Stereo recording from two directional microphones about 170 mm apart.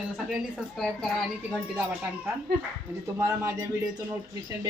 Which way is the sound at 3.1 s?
15° right (ahead or behind).